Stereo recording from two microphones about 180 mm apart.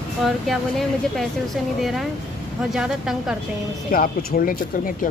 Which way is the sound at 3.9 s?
50° left (ahead or behind).